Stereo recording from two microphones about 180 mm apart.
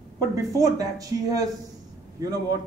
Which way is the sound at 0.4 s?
20° right (ahead or behind).